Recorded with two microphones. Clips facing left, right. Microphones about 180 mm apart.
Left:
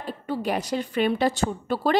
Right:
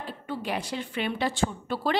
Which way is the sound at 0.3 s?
40° left (ahead or behind).